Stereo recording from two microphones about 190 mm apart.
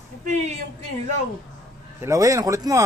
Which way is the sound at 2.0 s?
15° right (ahead or behind).